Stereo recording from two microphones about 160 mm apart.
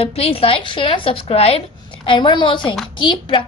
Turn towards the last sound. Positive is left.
turn(degrees=30)  # may be behind; listen again after turning